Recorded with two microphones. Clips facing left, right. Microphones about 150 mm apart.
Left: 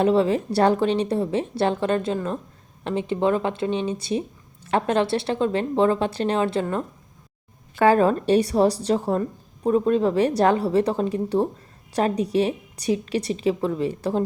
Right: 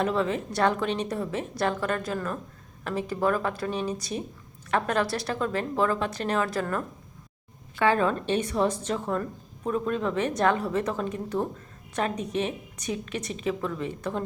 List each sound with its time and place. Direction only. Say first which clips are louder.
0.0 s a woman's voice: left 7 dB; 30° left (ahead or behind)
7.8 s a woman's voice: left 6 dB; 40° left (ahead or behind)